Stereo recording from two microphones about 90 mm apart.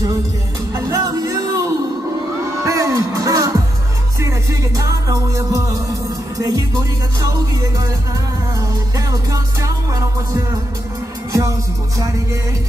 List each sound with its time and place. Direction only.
0.7 s music: 35° right (ahead or behind)